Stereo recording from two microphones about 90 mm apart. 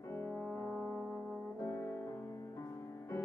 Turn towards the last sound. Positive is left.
turn(degrees=30)  # may be behind; listen again after turning